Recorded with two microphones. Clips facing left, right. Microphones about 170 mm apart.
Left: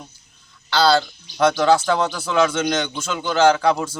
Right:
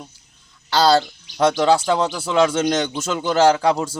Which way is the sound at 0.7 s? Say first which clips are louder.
Right 1 dB; 40° right (ahead or behind).